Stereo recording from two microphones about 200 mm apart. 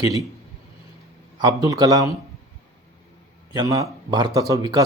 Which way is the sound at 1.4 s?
15° right (ahead or behind).